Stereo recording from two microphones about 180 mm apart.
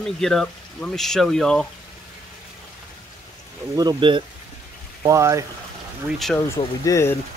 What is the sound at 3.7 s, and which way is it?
Speech, 25° right (ahead or behind).